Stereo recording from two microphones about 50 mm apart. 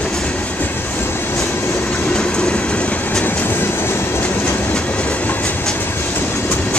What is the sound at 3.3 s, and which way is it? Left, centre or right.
Train, left.